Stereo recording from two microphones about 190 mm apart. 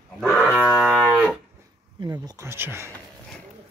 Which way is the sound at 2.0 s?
20° right (ahead or behind).